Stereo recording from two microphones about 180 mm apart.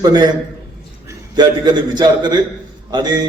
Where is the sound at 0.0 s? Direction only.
25° right (ahead or behind).